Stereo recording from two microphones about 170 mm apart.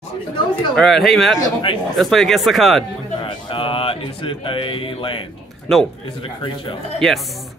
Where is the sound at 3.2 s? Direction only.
30° left (ahead or behind).